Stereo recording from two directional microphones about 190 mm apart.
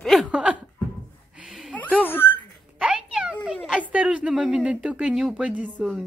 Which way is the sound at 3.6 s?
5° right (ahead or behind).